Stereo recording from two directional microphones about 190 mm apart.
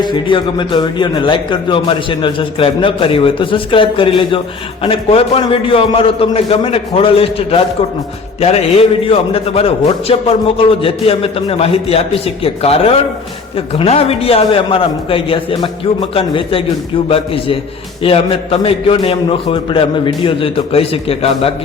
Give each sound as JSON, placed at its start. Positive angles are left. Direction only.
{"t": 0.0, "sound": "a man's voice", "side_deg": 25}